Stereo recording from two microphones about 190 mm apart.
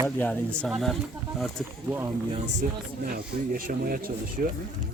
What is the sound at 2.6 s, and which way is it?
Speech, 45° right (ahead or behind).